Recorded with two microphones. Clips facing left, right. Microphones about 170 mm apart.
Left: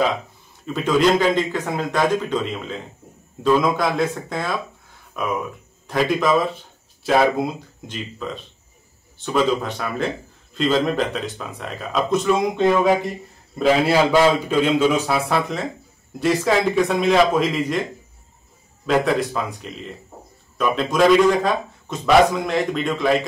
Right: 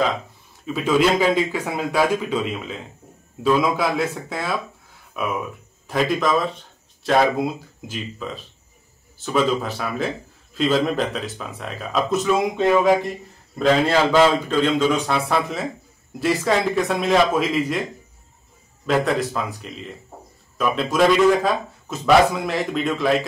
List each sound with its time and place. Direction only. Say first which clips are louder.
0.7 s a man's voice: left 1 dB; 5° right (ahead or behind)
13.6 s a man's voice: left 1 dB; 10° left (ahead or behind)
18.9 s a man's voice: left 1 dB; centre (ahead or behind)